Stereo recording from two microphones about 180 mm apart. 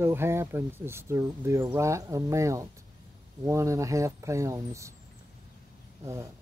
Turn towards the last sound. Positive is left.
turn(degrees=-15)  # may be behind; listen again after turning